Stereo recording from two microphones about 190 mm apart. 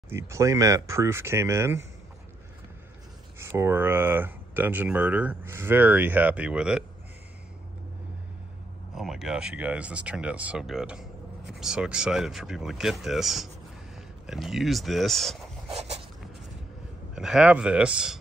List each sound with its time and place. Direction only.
0.1 s speech: 15° right (ahead or behind)
3.3 s speech: 15° right (ahead or behind)
8.9 s speech: centre (ahead or behind)
15.7 s a sound: 35° right (ahead or behind)
17.1 s speech: 5° right (ahead or behind)